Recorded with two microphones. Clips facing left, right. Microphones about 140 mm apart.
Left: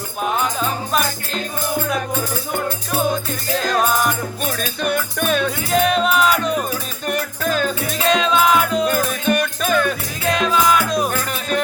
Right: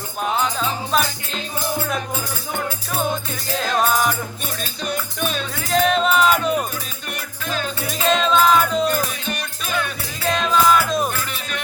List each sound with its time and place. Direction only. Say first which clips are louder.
0.2 s music: left 1 dB; 5° left (ahead or behind)
2.6 s music: left 3 dB; centre (ahead or behind)
4.5 s music: left 4 dB; 55° left (ahead or behind)
5.6 s music: right 1 dB; 5° left (ahead or behind)
7.1 s music: left 8 dB; 45° left (ahead or behind)
7.9 s music: right 1 dB; centre (ahead or behind)
8.9 s music: left 5 dB; 50° left (ahead or behind)
10.2 s music: even; centre (ahead or behind)
11.1 s music: left 6 dB; 45° left (ahead or behind)